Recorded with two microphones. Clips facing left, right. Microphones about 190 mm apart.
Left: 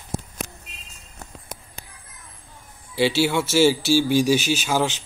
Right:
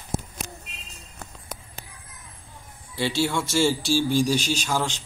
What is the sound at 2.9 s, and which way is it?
Speech, 75° left (ahead or behind).